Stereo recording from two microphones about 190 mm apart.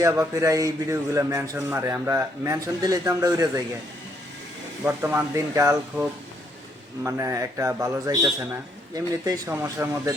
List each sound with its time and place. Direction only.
0.0 s a man's voice: 15° right (ahead or behind)
4.9 s a man's voice: 15° right (ahead or behind)